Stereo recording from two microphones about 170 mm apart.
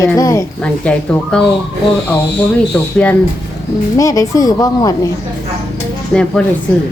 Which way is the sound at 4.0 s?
20° left (ahead or behind).